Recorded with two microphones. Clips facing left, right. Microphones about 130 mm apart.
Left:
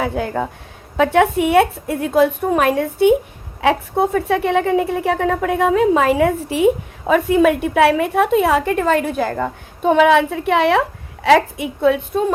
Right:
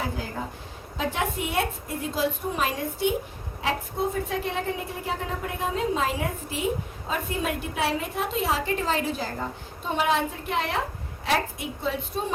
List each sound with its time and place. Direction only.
0.0 s a woman's voice: 70° left (ahead or behind)